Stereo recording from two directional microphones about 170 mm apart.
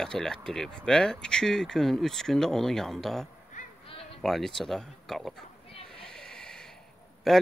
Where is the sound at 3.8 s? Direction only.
30° left (ahead or behind).